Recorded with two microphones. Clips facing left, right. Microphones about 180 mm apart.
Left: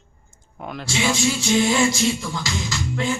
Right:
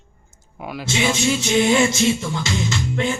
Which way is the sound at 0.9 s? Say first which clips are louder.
Right 2 dB; 20° right (ahead or behind).